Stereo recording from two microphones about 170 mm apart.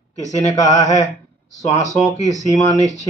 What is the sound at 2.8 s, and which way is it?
Speech, 20° right (ahead or behind).